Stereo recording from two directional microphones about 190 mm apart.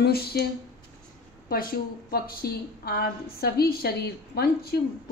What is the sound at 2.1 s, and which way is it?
A woman's voice, 55° left (ahead or behind).